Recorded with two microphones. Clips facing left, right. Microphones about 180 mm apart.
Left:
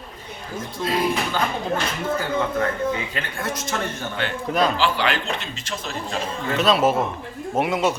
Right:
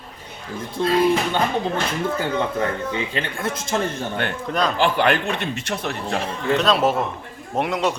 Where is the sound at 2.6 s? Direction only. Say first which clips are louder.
Left 1 dB; 25° right (ahead or behind).